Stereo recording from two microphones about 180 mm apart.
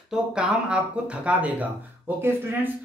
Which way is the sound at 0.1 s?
5° right (ahead or behind).